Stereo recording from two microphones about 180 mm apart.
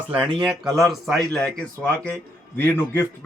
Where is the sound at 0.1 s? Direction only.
5° right (ahead or behind).